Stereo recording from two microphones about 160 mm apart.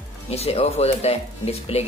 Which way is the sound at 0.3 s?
40° left (ahead or behind).